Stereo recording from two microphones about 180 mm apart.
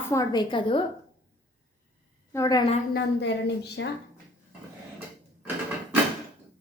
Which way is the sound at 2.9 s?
70° left (ahead or behind).